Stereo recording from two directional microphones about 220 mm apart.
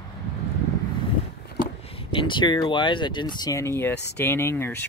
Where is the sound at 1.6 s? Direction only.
40° left (ahead or behind).